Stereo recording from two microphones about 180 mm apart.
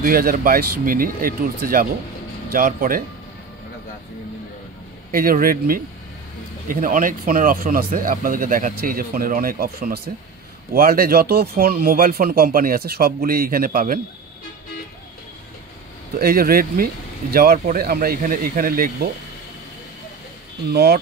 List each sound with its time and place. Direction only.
0.0 s speech: 55° right (ahead or behind)
5.1 s speech: 55° right (ahead or behind)
16.2 s speech: 55° right (ahead or behind)
20.7 s speech: 60° right (ahead or behind)